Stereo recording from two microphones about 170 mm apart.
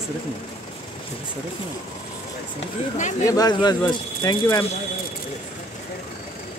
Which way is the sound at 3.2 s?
20° left (ahead or behind).